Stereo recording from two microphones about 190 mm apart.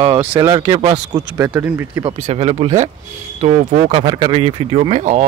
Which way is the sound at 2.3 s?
30° right (ahead or behind).